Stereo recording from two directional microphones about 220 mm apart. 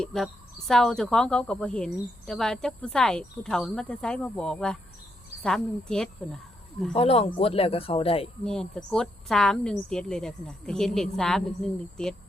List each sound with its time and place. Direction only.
0.0 s a woman's voice: centre (ahead or behind)
6.9 s speech: 25° left (ahead or behind)
8.4 s a woman's voice: 5° left (ahead or behind)